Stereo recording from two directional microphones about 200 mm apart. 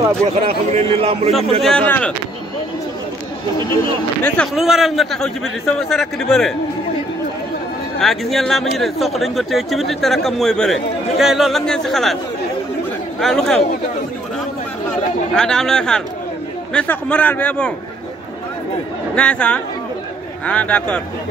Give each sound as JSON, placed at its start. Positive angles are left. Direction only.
{"t": 0.7, "sound": "a man's voice", "side_deg": -30}
{"t": 1.6, "sound": "speech", "side_deg": 5}
{"t": 4.2, "sound": "speech", "side_deg": 0}
{"t": 8.0, "sound": "speech", "side_deg": 0}
{"t": 13.2, "sound": "speech", "side_deg": 0}
{"t": 14.9, "sound": "a man's voice", "side_deg": 5}
{"t": 19.1, "sound": "speech", "side_deg": 5}